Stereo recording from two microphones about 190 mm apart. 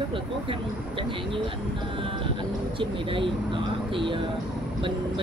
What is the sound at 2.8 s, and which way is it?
Speech, 25° right (ahead or behind).